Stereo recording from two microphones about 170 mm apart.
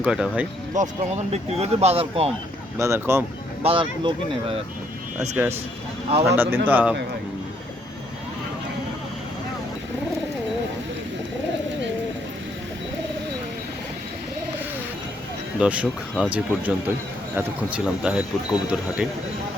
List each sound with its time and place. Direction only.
0.0 s speech: 5° right (ahead or behind)
0.7 s speech: 45° right (ahead or behind)
2.7 s speech: 15° right (ahead or behind)
3.6 s speech: 35° right (ahead or behind)
5.4 s speech: 15° right (ahead or behind)
15.5 s speech: 5° right (ahead or behind)